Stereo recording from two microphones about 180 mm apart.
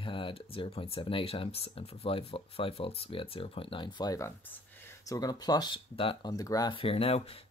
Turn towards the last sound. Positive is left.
turn(degrees=30)  # may be behind; listen again after turning